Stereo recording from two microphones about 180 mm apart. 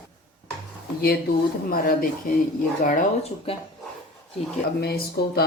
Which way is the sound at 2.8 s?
35° left (ahead or behind).